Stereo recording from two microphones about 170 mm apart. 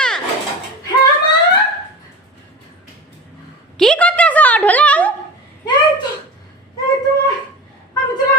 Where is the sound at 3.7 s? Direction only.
5° left (ahead or behind).